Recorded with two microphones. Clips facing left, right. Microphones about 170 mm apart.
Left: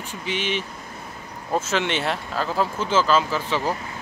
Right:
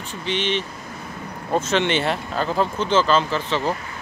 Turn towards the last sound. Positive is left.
turn(degrees=10)  # may be behind; listen again after turning